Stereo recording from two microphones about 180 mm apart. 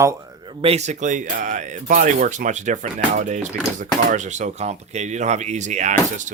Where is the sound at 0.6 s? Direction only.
35° right (ahead or behind).